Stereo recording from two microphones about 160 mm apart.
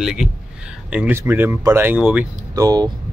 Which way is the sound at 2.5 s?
20° right (ahead or behind).